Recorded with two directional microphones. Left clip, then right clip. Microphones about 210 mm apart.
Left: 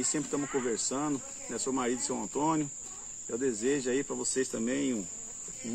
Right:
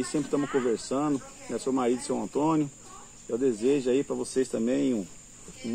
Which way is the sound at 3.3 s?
20° left (ahead or behind).